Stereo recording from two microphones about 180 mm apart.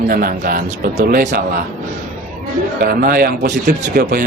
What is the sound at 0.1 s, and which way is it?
A man's voice, 50° right (ahead or behind).